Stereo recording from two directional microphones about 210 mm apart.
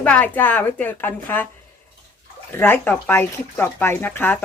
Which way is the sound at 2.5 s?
10° left (ahead or behind).